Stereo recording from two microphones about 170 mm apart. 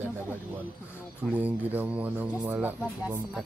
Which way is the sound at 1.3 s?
10° right (ahead or behind).